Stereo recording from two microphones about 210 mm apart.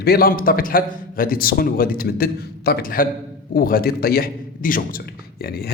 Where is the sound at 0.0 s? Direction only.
45° left (ahead or behind).